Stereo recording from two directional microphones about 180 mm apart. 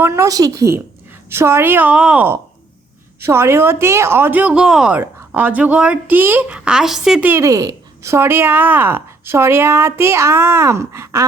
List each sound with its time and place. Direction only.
0.0 s a woman's voice: 15° right (ahead or behind)